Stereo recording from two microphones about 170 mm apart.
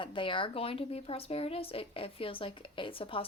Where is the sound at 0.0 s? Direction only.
30° left (ahead or behind).